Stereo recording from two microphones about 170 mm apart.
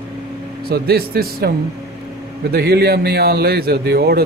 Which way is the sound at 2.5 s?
70° right (ahead or behind).